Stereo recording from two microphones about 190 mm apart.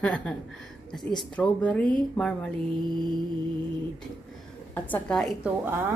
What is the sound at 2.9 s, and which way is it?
Mantra, 25° right (ahead or behind).